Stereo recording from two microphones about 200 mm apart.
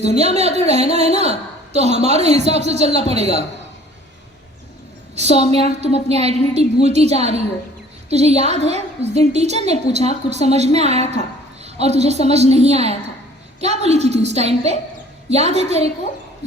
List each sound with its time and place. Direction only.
0.0 s a woman's voice: 35° right (ahead or behind)
5.1 s a woman's voice: 30° right (ahead or behind)